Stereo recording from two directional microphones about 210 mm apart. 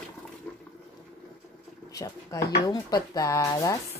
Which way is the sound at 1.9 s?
15° left (ahead or behind).